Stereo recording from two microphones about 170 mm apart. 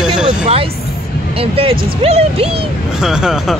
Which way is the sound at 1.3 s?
35° right (ahead or behind).